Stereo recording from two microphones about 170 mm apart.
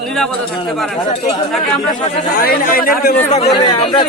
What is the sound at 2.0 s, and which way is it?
A man's voice, 60° left (ahead or behind).